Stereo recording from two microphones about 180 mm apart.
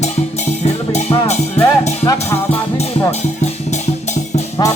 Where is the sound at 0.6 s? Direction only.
40° left (ahead or behind).